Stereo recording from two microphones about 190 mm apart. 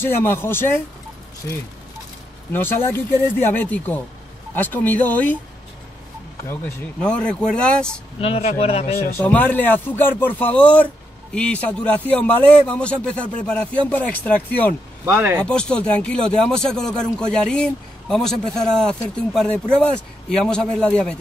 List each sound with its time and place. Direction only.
0.0 s a man's voice: 10° left (ahead or behind)
2.5 s a man's voice: 10° left (ahead or behind)
3.2 s speech: 15° right (ahead or behind)
3.4 s a man's voice: 10° left (ahead or behind)
6.5 s speech: 5° left (ahead or behind)
8.2 s speech: 35° left (ahead or behind)
9.1 s a man's voice: 10° left (ahead or behind)
15.0 s speech: 10° right (ahead or behind)
15.4 s speech: 5° left (ahead or behind)